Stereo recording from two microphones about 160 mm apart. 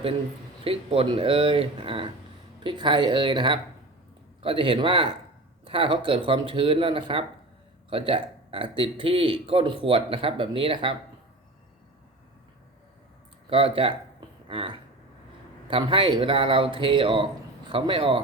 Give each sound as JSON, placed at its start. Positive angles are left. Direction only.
{"t": 0.6, "sound": "speech", "side_deg": -35}
{"t": 13.5, "sound": "speech", "side_deg": -35}